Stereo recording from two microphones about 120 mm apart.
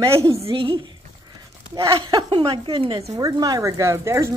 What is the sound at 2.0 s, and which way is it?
Speech, 40° right (ahead or behind).